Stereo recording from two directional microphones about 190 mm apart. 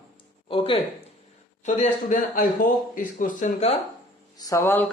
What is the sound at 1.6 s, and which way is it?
Speech, 40° left (ahead or behind).